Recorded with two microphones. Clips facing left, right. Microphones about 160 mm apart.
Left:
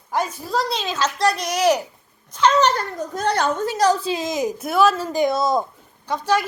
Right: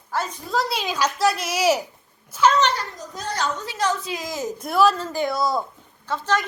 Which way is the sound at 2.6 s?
40° left (ahead or behind).